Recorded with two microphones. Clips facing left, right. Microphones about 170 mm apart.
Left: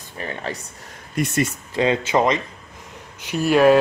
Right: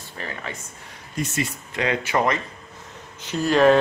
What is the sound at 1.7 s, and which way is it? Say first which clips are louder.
Speech: left 4 dB; 25° left (ahead or behind).